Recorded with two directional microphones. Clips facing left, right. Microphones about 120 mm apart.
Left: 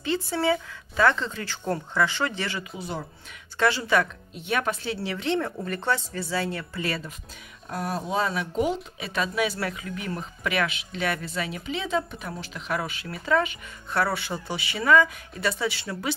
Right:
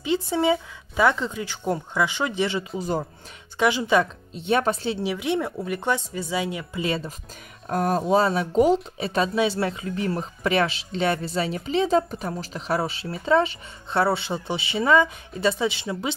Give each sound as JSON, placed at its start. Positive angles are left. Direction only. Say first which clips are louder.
{"t": 0.0, "sound": "speech", "louder": "right 3 dB", "side_deg": -15}
{"t": 2.8, "sound": "speech", "louder": "right 8 dB", "side_deg": -40}
{"t": 3.5, "sound": "a woman's voice", "louder": "right 3 dB", "side_deg": -15}
{"t": 5.0, "sound": "speech", "louder": "right 1 dB", "side_deg": -10}
{"t": 7.6, "sound": "speech", "louder": "right 7 dB", "side_deg": -45}